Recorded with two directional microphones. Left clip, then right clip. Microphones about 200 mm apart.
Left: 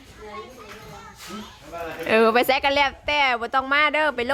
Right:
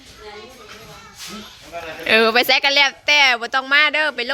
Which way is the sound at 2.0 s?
5° left (ahead or behind).